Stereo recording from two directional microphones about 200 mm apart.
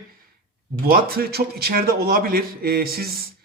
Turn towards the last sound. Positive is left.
turn(degrees=-50)  # may be behind; listen again after turning